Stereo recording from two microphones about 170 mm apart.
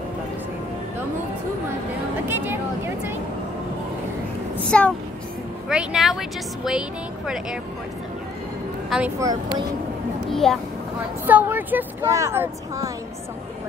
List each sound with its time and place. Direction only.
4.6 s a woman's voice: 5° left (ahead or behind)
9.2 s speech: 20° right (ahead or behind)
10.3 s a woman's voice: centre (ahead or behind)
11.2 s speech: 10° right (ahead or behind)